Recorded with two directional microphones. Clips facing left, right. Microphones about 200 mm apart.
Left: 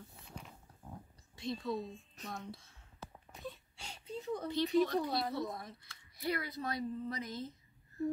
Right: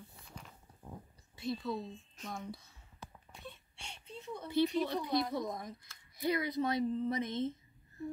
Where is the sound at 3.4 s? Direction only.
35° left (ahead or behind).